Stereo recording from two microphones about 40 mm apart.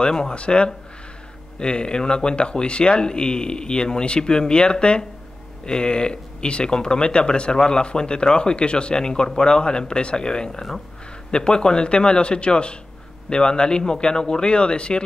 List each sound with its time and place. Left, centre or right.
0.0 s speech: centre
0.3 s speech: left